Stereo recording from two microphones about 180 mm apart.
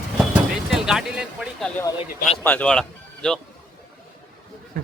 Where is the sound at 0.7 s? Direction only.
5° right (ahead or behind).